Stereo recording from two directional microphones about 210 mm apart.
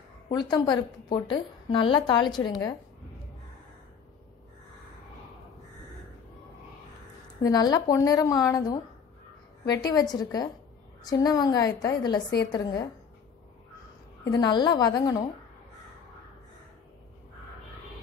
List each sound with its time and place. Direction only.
0.3 s a woman's voice: 20° left (ahead or behind)
7.4 s a woman's voice: 20° left (ahead or behind)
14.2 s a woman's voice: 20° left (ahead or behind)